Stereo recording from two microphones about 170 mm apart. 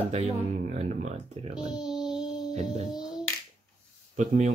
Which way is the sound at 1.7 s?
5° right (ahead or behind).